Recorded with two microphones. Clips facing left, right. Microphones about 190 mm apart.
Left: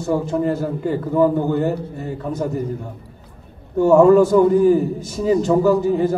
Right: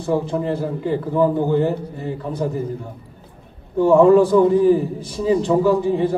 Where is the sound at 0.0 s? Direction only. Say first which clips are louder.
Left 1 dB; 45° left (ahead or behind).